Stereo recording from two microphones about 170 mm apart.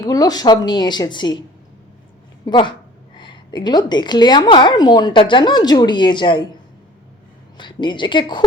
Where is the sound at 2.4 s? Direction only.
25° left (ahead or behind).